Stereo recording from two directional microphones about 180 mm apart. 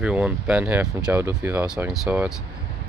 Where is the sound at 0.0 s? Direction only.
5° right (ahead or behind).